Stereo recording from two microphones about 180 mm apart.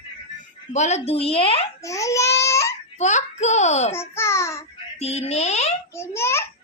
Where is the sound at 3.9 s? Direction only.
15° left (ahead or behind).